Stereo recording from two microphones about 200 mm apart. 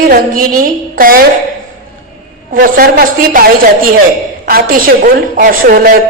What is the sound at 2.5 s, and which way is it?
A woman's voice, 45° right (ahead or behind).